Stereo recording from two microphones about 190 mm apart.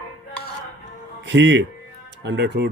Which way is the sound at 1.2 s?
75° right (ahead or behind).